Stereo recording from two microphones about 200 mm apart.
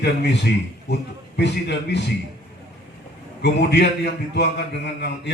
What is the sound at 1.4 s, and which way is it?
Mantra, 55° left (ahead or behind).